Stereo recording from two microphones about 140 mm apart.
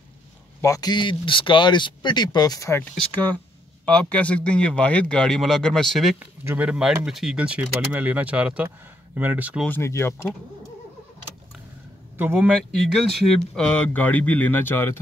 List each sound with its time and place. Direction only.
0.6 s speech: 25° left (ahead or behind)
3.8 s speech: 10° left (ahead or behind)
6.1 s speech: 10° right (ahead or behind)
9.7 s speech: 20° left (ahead or behind)
12.2 s speech: 15° right (ahead or behind)
12.8 s speech: centre (ahead or behind)